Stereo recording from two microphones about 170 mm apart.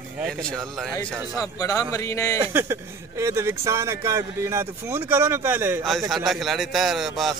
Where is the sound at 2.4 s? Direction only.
15° right (ahead or behind).